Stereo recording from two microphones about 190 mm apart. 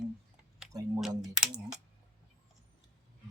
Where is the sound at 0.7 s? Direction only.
20° right (ahead or behind).